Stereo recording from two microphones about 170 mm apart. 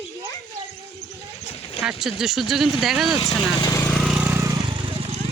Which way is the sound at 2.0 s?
Centre (ahead or behind).